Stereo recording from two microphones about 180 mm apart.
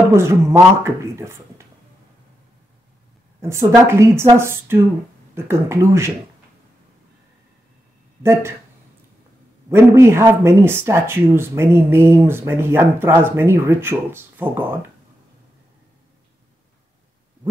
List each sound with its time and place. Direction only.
0.1 s speech: 15° right (ahead or behind)
3.3 s speech: 15° right (ahead or behind)
8.2 s speech: 15° right (ahead or behind)
9.7 s speech: 15° right (ahead or behind)